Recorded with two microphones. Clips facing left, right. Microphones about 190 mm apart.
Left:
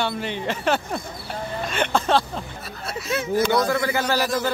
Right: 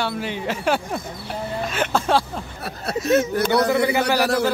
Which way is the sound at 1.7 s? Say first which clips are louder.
Even; 5° right (ahead or behind).